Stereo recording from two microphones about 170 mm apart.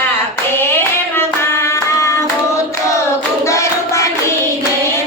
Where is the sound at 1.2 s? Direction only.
15° left (ahead or behind).